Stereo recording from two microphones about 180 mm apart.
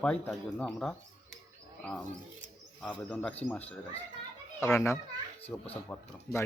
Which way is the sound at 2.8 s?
10° left (ahead or behind).